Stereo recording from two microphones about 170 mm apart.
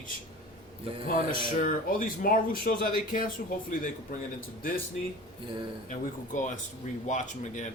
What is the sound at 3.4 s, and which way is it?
Speech, 65° left (ahead or behind).